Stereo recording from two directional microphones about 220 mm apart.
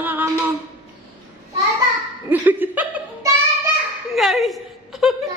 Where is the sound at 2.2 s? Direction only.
10° right (ahead or behind).